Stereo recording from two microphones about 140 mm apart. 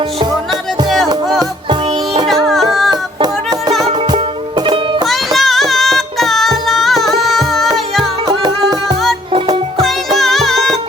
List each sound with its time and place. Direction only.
1.4 s music: 30° right (ahead or behind)
2.2 s music: centre (ahead or behind)
2.9 s music: 30° right (ahead or behind)
5.0 s music: centre (ahead or behind)
9.8 s music: centre (ahead or behind)